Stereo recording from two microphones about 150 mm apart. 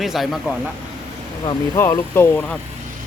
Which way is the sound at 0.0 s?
Centre (ahead or behind).